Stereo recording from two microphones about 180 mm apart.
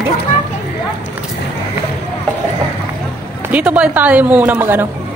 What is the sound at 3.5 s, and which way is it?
A woman's voice, 5° right (ahead or behind).